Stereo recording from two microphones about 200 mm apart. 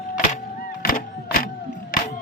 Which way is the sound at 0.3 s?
45° left (ahead or behind).